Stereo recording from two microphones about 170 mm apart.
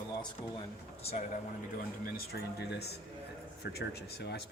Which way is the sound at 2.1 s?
75° left (ahead or behind).